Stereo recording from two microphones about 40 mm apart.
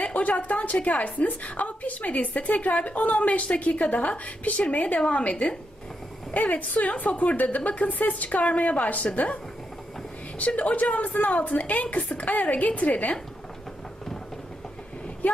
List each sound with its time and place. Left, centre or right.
0.0 s a woman's voice: left
6.3 s a woman's voice: left
10.4 s a woman's voice: left
15.2 s speech: left